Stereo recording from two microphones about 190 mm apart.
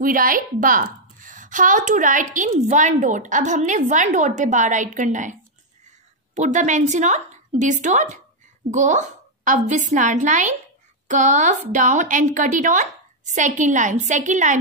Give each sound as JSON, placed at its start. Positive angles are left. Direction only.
{"t": 0.0, "sound": "a woman's voice", "side_deg": -45}